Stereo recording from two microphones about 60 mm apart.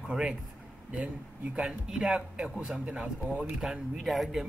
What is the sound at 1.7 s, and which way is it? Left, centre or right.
A man's voice, centre.